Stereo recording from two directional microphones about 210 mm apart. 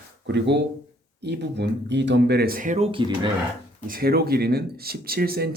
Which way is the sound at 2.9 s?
25° right (ahead or behind).